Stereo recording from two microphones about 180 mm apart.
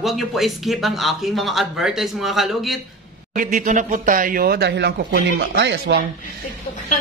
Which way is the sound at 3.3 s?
45° right (ahead or behind).